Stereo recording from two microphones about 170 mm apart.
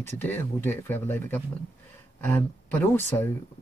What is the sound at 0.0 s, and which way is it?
Speech, 10° left (ahead or behind).